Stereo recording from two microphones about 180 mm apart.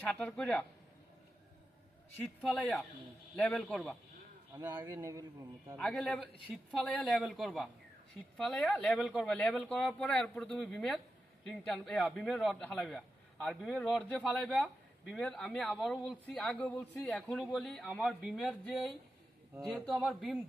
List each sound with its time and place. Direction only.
0.0 s speech: 10° left (ahead or behind)
2.1 s a man's voice: centre (ahead or behind)
4.7 s a man's voice: 20° right (ahead or behind)
5.7 s a man's voice: 5° left (ahead or behind)